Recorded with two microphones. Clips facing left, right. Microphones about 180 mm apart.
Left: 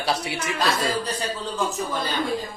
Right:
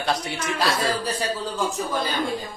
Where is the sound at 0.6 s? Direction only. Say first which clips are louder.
Even; 10° right (ahead or behind).